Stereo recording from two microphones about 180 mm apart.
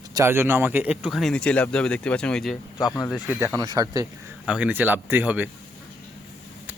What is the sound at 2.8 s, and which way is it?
Speech, 15° left (ahead or behind).